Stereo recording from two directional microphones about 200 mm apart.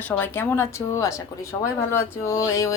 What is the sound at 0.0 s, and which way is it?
A woman's voice, 10° left (ahead or behind).